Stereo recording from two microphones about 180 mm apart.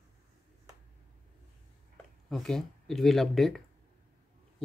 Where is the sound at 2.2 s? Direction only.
5° left (ahead or behind).